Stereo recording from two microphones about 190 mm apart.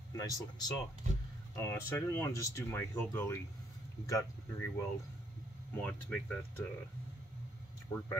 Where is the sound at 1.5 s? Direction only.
10° left (ahead or behind).